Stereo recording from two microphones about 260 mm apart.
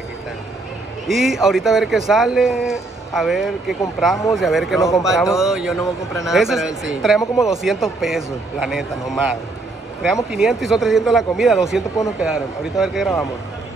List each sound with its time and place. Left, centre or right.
1.0 s speech: centre
10.3 s speech: centre